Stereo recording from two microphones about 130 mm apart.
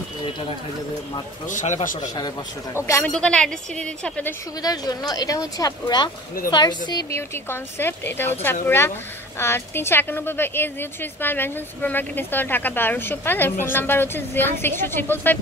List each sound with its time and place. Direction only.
1.5 s a man's voice: 70° left (ahead or behind)
2.7 s speech: 20° left (ahead or behind)
3.1 s a woman's voice: 5° left (ahead or behind)
4.6 s a woman's voice: 30° left (ahead or behind)